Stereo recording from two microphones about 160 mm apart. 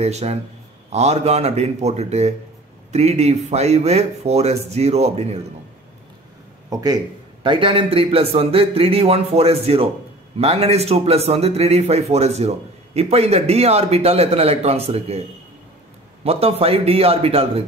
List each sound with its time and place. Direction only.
0.0 s a man's voice: 40° right (ahead or behind)
6.7 s a man's voice: 25° right (ahead or behind); by 15.2 s 40° right (ahead or behind)
16.3 s a man's voice: 40° right (ahead or behind)